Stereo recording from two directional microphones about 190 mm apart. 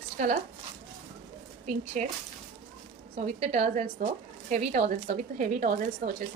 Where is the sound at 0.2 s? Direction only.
40° right (ahead or behind).